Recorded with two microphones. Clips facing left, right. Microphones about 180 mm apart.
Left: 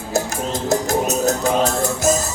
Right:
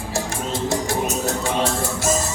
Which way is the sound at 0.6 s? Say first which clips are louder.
Left 4 dB; 40° left (ahead or behind).